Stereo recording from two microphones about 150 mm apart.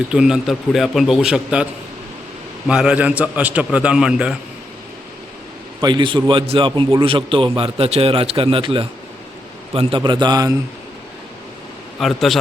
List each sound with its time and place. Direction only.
0.1 s a man's voice: 5° right (ahead or behind)
2.6 s a man's voice: 5° right (ahead or behind)
5.8 s a man's voice: 30° right (ahead or behind)
11.9 s a man's voice: centre (ahead or behind)